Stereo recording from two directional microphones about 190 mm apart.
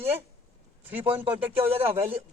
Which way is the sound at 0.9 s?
10° right (ahead or behind).